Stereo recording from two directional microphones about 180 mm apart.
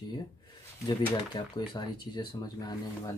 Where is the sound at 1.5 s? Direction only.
25° left (ahead or behind).